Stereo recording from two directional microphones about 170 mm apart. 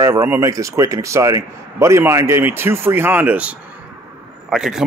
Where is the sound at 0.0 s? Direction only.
15° right (ahead or behind).